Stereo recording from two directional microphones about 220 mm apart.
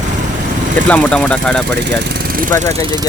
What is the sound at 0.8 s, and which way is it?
Speech, 5° left (ahead or behind).